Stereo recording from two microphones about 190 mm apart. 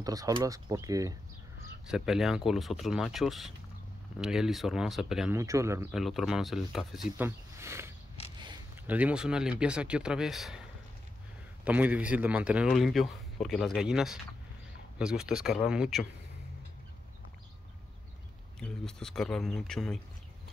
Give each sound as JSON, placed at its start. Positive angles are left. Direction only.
{"t": 0.0, "sound": "speech", "side_deg": -20}
{"t": 1.9, "sound": "speech", "side_deg": 0}
{"t": 5.3, "sound": "speech", "side_deg": -15}
{"t": 5.9, "sound": "speech", "side_deg": 0}
{"t": 7.2, "sound": "speech", "side_deg": -15}
{"t": 11.6, "sound": "speech", "side_deg": -10}
{"t": 18.6, "sound": "speech", "side_deg": 5}